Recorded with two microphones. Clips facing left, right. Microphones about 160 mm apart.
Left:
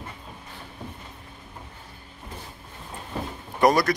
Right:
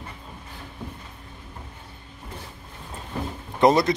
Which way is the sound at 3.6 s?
25° right (ahead or behind).